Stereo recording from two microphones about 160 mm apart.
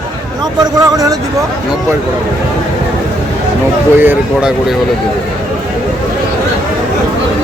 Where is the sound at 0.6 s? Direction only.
20° right (ahead or behind).